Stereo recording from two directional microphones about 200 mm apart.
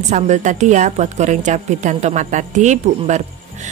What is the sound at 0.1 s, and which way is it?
Speech, 35° right (ahead or behind).